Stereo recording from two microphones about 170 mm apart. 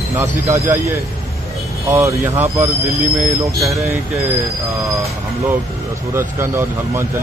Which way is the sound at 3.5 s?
20° right (ahead or behind).